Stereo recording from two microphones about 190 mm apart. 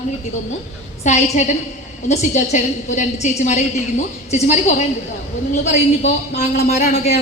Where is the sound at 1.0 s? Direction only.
40° left (ahead or behind).